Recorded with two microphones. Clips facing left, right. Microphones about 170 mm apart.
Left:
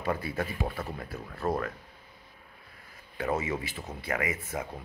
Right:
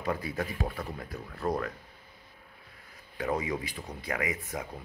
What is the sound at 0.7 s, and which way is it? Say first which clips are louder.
Speech: left 1 dB; 5° left (ahead or behind).